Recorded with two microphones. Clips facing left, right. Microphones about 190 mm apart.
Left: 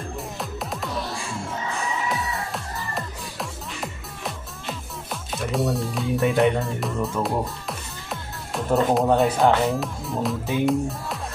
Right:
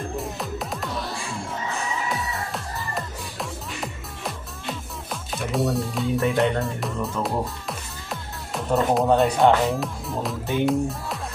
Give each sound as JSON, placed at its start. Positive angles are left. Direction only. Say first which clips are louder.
{"t": 0.2, "sound": "music", "louder": "right 2 dB", "side_deg": 0}